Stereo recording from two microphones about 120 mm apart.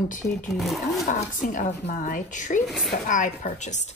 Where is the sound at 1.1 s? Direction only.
90° left.